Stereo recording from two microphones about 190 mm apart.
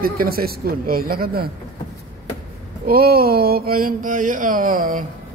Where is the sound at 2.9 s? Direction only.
55° right (ahead or behind).